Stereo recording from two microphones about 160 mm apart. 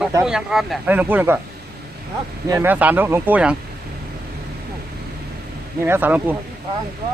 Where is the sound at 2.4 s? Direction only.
15° right (ahead or behind).